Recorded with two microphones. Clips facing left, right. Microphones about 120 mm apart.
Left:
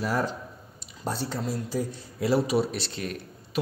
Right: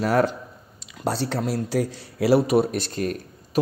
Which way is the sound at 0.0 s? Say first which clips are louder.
Right 7 dB; 75° right (ahead or behind).